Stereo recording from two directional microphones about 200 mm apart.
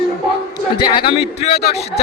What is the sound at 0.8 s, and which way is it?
Speech, 25° left (ahead or behind).